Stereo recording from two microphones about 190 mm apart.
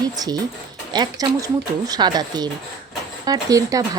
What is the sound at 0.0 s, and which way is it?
A woman's voice, 20° right (ahead or behind).